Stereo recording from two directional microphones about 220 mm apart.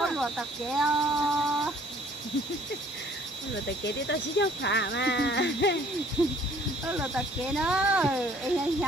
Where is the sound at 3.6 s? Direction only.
50° left (ahead or behind).